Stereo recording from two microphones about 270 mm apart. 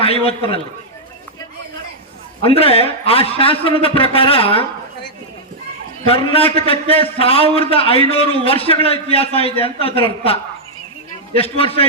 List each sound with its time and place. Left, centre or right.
0.0 s a man's voice: left
2.4 s a man's voice: left
6.1 s a man's voice: left
11.3 s a man's voice: left